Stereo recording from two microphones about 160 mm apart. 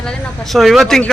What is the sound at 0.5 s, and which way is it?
Speech, centre (ahead or behind).